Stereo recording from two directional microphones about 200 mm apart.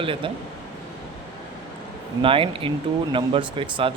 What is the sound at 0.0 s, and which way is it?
Speech, 25° right (ahead or behind).